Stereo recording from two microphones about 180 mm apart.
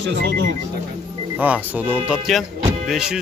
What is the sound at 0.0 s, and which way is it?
Speech, 75° right (ahead or behind).